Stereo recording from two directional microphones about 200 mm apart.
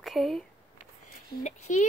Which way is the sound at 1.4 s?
35° left (ahead or behind).